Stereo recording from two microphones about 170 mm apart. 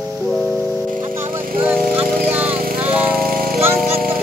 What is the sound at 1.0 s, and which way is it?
Music, 15° right (ahead or behind).